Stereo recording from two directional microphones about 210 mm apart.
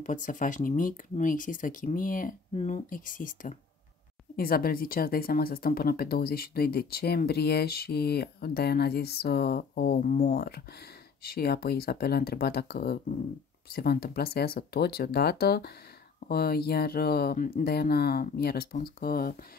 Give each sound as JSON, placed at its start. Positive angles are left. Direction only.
{"t": 0.0, "sound": "speech", "side_deg": 40}